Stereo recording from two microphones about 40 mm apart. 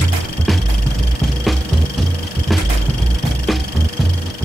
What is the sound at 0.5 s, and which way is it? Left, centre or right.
Music, centre.